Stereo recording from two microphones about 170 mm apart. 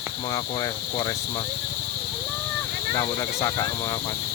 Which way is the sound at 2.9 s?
20° left (ahead or behind).